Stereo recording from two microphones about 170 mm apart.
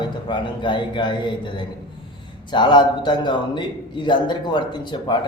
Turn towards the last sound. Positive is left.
turn(degrees=25)  # may be behind; listen again after turning